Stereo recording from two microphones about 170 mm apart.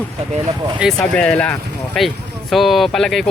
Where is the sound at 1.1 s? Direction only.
5° left (ahead or behind).